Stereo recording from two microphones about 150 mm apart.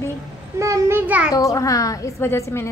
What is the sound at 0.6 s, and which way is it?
Child singing, 20° right (ahead or behind).